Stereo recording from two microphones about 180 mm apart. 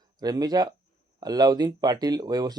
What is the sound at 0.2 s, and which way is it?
Speech, 20° right (ahead or behind).